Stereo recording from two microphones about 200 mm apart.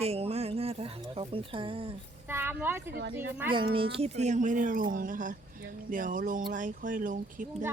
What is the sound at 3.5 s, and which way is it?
Speech, 25° right (ahead or behind).